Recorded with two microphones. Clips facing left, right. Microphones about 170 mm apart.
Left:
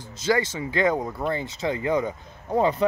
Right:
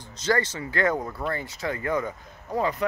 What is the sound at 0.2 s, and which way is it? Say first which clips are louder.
Speech: left 2 dB; 10° left (ahead or behind).